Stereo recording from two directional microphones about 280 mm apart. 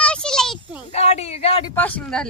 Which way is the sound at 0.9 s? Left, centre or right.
Left.